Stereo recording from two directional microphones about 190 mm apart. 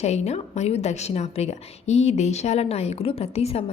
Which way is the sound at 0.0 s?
35° left (ahead or behind).